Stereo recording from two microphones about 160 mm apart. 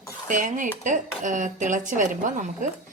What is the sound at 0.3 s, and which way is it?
A woman's voice, 50° right (ahead or behind).